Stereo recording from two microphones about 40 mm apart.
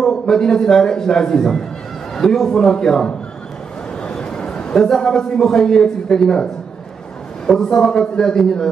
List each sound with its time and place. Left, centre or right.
0.0 s a man's voice: centre
4.2 s a sound: left
4.7 s a man's voice: centre